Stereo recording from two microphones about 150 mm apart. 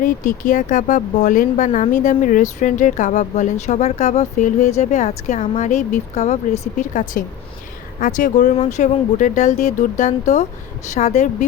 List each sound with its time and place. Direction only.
0.0 s speech: 60° left (ahead or behind)